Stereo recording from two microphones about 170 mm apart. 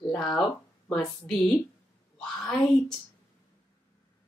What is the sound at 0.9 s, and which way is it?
Speech, 5° left (ahead or behind).